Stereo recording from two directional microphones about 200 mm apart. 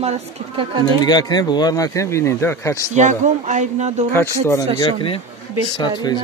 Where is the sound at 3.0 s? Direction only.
35° right (ahead or behind).